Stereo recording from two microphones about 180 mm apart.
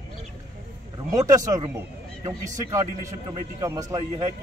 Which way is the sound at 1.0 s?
20° right (ahead or behind).